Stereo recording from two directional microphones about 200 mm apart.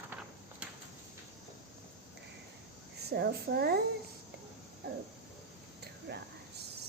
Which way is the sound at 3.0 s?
55° right (ahead or behind).